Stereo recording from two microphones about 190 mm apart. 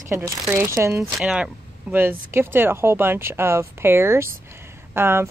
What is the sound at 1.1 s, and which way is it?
Speech, 5° right (ahead or behind).